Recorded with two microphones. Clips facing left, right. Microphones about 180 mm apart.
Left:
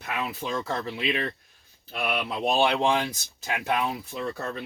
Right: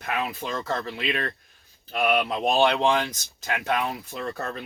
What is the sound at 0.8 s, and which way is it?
Speech, 5° left (ahead or behind).